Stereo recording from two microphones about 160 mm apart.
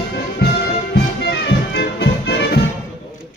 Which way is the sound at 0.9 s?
90° left.